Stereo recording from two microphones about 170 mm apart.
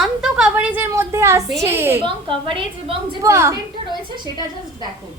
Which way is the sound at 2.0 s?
30° right (ahead or behind).